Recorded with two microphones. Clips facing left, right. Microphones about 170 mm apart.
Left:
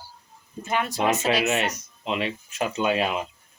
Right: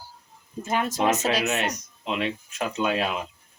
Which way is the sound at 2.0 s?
Centre (ahead or behind).